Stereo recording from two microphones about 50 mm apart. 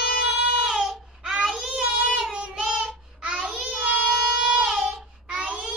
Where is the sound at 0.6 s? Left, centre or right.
Centre.